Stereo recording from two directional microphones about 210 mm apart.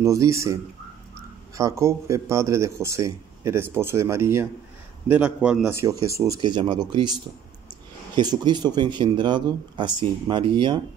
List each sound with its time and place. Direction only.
0.0 s speech: 15° right (ahead or behind)
8.2 s speech: 20° right (ahead or behind)